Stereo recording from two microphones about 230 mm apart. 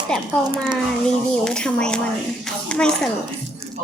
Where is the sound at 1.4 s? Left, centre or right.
Centre.